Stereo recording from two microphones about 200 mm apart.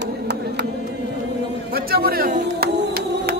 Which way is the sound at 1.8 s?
50° right (ahead or behind).